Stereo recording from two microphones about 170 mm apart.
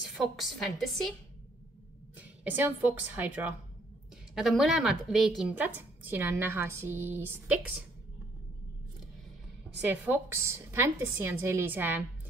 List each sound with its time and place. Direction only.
0.1 s a woman's voice: centre (ahead or behind)
2.1 s a woman's voice: 10° right (ahead or behind)
9.8 s a woman's voice: 10° right (ahead or behind)